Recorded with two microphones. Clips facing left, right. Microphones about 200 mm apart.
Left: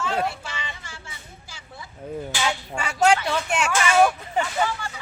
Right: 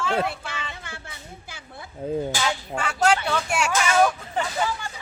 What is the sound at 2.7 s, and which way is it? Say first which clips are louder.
Speech: left 2 dB; 10° left (ahead or behind).